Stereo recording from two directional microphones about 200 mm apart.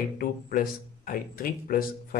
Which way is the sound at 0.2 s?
45° left (ahead or behind).